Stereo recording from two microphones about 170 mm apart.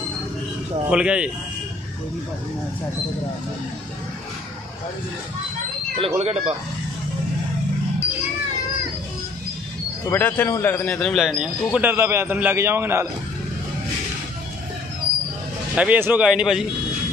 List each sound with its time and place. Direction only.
0.8 s a man's voice: 5° right (ahead or behind)
5.9 s speech: 35° right (ahead or behind)
10.0 s speech: 10° left (ahead or behind)
11.0 s a man's voice: centre (ahead or behind)
15.7 s a man's voice: 10° right (ahead or behind)